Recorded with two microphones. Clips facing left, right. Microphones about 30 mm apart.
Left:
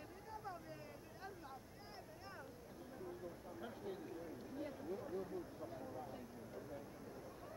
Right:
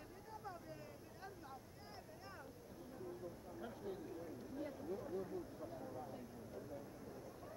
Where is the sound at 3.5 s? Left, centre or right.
Centre.